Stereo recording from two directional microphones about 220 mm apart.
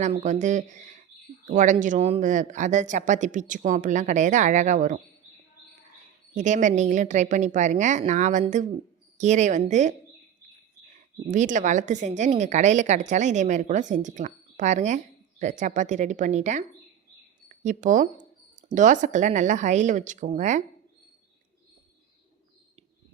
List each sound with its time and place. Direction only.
0.0 s a woman's voice: 35° right (ahead or behind)
6.3 s a woman's voice: 35° right (ahead or behind)
11.3 s a woman's voice: 35° right (ahead or behind)